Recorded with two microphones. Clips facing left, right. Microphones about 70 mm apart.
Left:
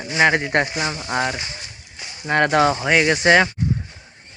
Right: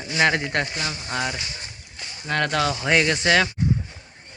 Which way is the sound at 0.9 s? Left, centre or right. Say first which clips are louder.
Left 5 dB; left.